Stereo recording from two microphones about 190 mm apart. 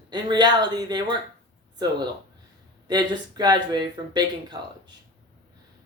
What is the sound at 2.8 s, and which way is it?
Speech, 20° right (ahead or behind).